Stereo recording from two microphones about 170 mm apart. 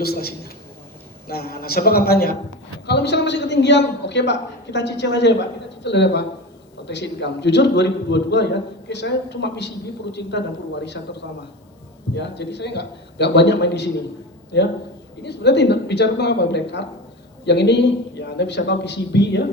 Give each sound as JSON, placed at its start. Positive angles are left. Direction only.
{"t": 0.0, "sound": "a man's voice", "side_deg": 65}
{"t": 2.8, "sound": "a woman's voice", "side_deg": 75}
{"t": 12.1, "sound": "a woman's voice", "side_deg": 90}
{"t": 15.2, "sound": "a woman's voice", "side_deg": 80}